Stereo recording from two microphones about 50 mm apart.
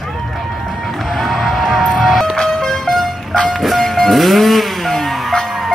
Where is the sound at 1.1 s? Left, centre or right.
Centre.